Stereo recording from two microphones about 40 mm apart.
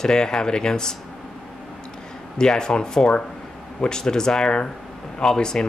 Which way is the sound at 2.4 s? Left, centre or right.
Centre.